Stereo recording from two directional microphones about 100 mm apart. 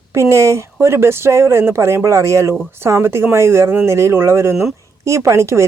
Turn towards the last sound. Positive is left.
turn(degrees=-30)  # may be behind; listen again after turning